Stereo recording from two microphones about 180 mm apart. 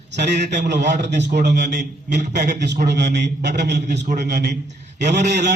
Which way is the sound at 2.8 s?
70° right (ahead or behind).